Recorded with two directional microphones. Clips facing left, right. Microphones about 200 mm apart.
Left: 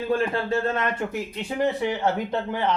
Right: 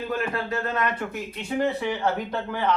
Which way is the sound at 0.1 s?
30° left (ahead or behind).